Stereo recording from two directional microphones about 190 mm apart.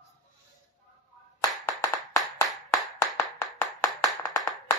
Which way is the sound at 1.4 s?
15° left (ahead or behind).